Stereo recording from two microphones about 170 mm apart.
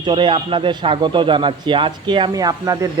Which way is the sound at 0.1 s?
30° right (ahead or behind).